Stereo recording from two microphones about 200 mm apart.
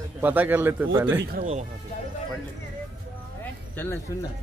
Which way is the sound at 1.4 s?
35° right (ahead or behind).